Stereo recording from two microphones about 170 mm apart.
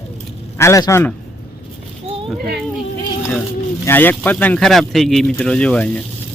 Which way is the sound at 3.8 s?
10° left (ahead or behind).